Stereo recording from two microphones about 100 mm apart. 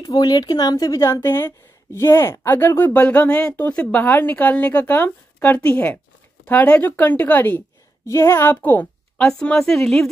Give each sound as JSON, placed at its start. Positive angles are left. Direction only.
{"t": 0.0, "sound": "a woman's voice", "side_deg": 40}